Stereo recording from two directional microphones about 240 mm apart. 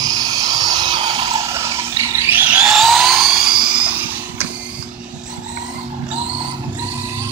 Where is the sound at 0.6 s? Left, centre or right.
Centre.